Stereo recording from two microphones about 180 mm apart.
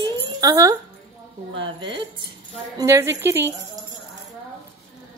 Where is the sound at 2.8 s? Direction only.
15° right (ahead or behind).